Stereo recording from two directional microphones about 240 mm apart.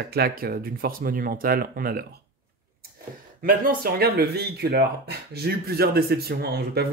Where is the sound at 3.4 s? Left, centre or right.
Right.